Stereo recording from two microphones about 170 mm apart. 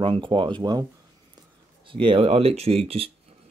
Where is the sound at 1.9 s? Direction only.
30° right (ahead or behind).